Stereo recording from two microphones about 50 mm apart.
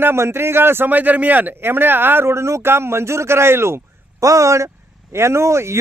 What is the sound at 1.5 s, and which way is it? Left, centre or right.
Speech, right.